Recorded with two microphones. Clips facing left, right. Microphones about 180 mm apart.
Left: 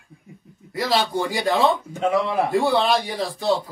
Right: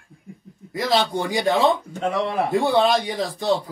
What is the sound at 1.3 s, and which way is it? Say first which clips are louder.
Speech: right 2 dB; 20° right (ahead or behind).